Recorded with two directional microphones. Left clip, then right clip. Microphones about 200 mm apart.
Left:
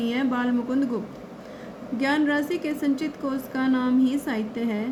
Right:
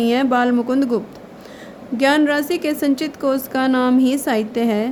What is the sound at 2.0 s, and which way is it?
A woman's voice, 55° right (ahead or behind).